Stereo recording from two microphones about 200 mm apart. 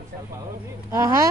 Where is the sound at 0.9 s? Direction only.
15° right (ahead or behind).